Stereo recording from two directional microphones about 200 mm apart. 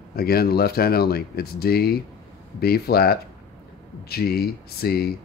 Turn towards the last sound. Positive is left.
turn(degrees=50)  # may be behind; listen again after turning